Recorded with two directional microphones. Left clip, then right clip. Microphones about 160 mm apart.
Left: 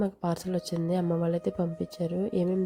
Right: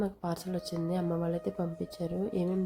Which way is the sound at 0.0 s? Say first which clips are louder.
Left 4 dB; 40° left (ahead or behind).